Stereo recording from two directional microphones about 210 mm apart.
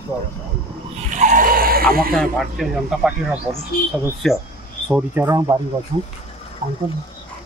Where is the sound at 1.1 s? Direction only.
35° right (ahead or behind).